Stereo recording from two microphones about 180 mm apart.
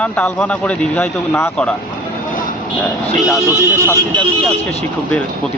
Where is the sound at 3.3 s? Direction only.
15° left (ahead or behind).